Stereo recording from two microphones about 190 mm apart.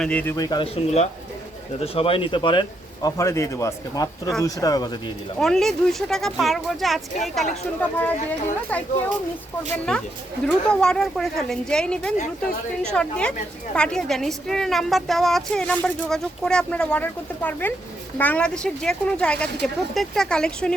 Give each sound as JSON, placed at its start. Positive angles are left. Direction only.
{"t": 0.0, "sound": "speech", "side_deg": 5}
{"t": 0.3, "sound": "a man's voice", "side_deg": 20}
{"t": 0.9, "sound": "a man's voice", "side_deg": 35}
{"t": 5.4, "sound": "a woman's voice", "side_deg": 0}